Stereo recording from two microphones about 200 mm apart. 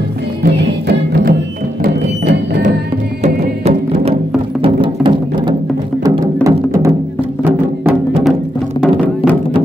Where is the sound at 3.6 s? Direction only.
30° right (ahead or behind); by 8.0 s 10° right (ahead or behind).